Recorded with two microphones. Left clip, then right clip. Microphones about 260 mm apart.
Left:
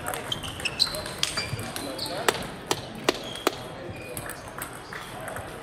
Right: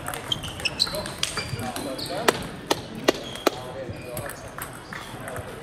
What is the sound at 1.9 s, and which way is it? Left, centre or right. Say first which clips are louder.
Basketball bounce: right 3 dB; right.